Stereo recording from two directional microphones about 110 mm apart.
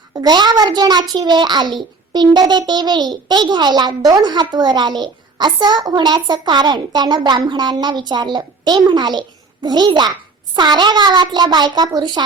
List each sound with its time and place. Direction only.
0.1 s a woman's voice: 40° right (ahead or behind)